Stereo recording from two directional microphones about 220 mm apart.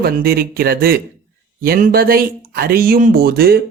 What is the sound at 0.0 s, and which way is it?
Speech, 45° right (ahead or behind).